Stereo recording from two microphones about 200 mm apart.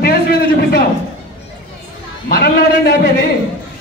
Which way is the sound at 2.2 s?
50° left (ahead or behind).